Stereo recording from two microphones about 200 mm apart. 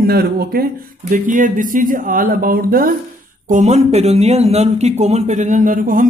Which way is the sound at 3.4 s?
35° right (ahead or behind).